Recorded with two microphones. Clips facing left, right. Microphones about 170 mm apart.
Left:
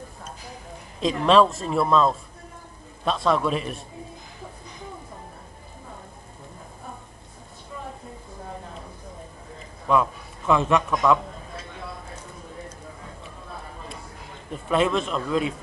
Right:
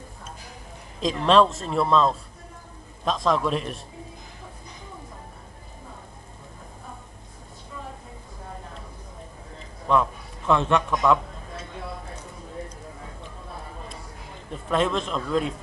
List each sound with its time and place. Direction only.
1.0 s speech: 5° left (ahead or behind)
9.8 s a man's voice: 5° left (ahead or behind)
14.5 s speech: 5° left (ahead or behind)